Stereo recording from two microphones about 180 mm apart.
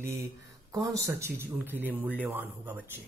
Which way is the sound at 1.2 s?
10° right (ahead or behind).